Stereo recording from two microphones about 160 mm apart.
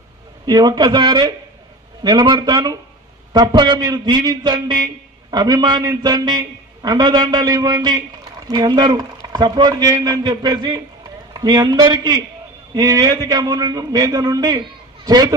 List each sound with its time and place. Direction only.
0.5 s a man's voice: 25° right (ahead or behind)